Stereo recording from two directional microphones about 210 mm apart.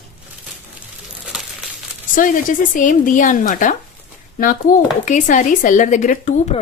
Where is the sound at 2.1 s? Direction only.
40° left (ahead or behind).